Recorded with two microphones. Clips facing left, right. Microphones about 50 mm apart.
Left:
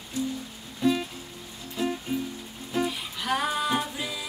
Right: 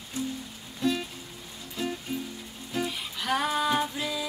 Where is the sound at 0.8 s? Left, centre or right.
Centre.